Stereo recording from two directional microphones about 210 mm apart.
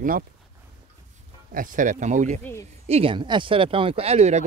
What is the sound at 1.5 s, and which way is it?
Speech, 40° right (ahead or behind).